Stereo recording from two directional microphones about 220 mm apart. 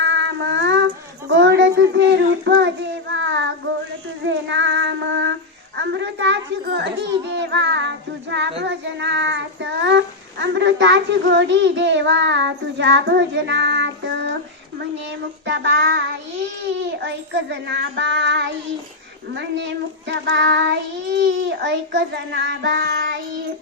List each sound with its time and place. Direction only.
0.0 s child singing: 55° right (ahead or behind)
1.3 s a child's voice: 55° right (ahead or behind)
3.2 s child singing: 55° right (ahead or behind)
5.8 s a child's voice: 55° right (ahead or behind)
15.4 s child singing: 55° right (ahead or behind)
17.5 s a child's voice: 55° right (ahead or behind)
19.5 s a child's voice: 50° right (ahead or behind)